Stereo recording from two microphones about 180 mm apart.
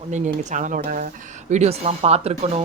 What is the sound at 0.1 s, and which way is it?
Speech, 40° right (ahead or behind).